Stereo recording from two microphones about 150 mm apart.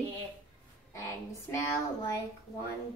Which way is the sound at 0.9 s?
20° left (ahead or behind).